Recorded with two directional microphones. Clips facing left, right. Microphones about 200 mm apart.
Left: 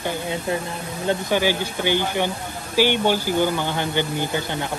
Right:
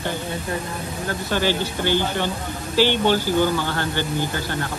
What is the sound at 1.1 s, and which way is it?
Speech, 15° left (ahead or behind).